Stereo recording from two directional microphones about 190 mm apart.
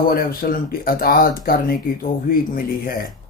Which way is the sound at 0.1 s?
50° left (ahead or behind).